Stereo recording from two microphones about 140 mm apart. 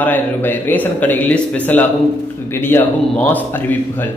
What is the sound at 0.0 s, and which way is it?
A man's voice, 15° left (ahead or behind).